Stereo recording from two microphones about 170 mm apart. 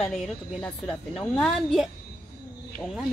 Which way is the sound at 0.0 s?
5° left (ahead or behind).